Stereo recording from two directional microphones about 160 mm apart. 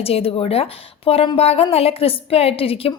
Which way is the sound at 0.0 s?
35° left (ahead or behind).